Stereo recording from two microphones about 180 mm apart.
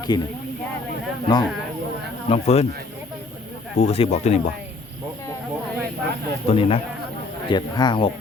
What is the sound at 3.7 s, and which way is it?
Speech, 35° left (ahead or behind).